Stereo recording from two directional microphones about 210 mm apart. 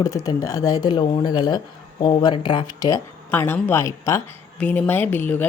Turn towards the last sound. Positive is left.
turn(degrees=10)  # may be behind; listen again after turning